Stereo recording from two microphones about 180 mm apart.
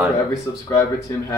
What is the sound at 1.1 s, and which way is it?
Speech, 15° left (ahead or behind).